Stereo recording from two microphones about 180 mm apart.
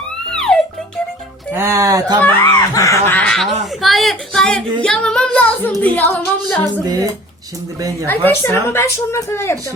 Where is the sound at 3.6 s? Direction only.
Centre (ahead or behind).